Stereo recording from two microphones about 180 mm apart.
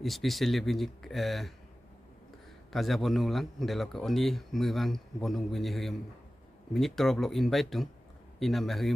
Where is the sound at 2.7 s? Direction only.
Centre (ahead or behind).